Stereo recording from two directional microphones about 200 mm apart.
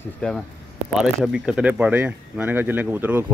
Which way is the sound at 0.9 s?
5° right (ahead or behind).